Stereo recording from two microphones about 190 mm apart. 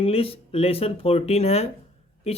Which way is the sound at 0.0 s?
30° left (ahead or behind).